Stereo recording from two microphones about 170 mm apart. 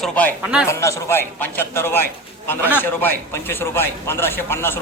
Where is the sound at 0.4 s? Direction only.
5° right (ahead or behind).